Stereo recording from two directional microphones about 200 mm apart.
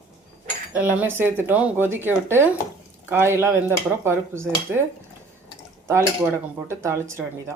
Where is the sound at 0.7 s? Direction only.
10° right (ahead or behind).